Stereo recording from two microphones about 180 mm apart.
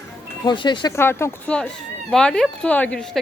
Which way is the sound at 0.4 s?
25° left (ahead or behind).